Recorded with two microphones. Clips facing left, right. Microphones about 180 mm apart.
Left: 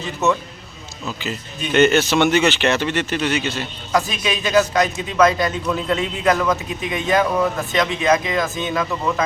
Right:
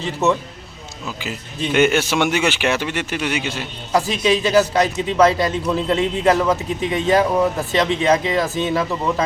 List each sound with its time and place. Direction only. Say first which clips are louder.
1.0 s speech: left 2 dB; 10° right (ahead or behind)
3.9 s a man's voice: right 4 dB; 30° right (ahead or behind)